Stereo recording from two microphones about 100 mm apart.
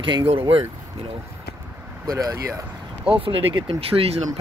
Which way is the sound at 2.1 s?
35° right (ahead or behind).